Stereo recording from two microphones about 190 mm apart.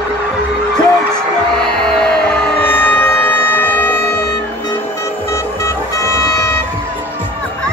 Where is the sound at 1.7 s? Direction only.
5° left (ahead or behind).